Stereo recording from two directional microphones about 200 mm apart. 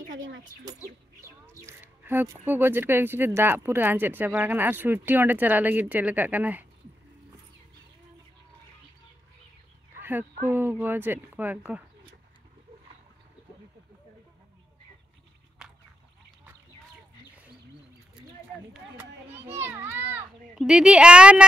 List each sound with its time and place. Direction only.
0.1 s speech: 70° right (ahead or behind)
1.4 s speech: 10° right (ahead or behind)
10.0 s speech: 10° right (ahead or behind)
15.6 s whip: 5° right (ahead or behind)
18.7 s a sound: 10° right (ahead or behind)
19.6 s children playing: 10° right (ahead or behind)
20.5 s a woman's voice: 5° right (ahead or behind)